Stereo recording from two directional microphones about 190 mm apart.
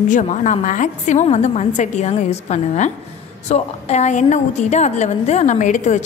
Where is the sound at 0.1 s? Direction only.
40° left (ahead or behind).